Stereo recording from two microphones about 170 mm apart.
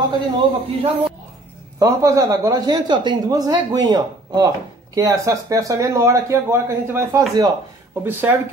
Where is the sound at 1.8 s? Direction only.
20° right (ahead or behind).